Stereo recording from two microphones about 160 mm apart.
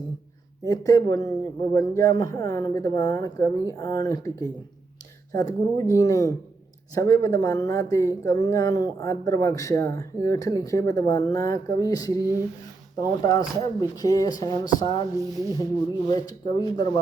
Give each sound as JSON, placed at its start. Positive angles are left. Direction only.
{"t": 0.6, "sound": "speech", "side_deg": 20}